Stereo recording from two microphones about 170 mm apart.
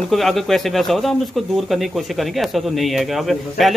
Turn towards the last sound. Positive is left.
turn(degrees=0)  # may be behind; listen again after turning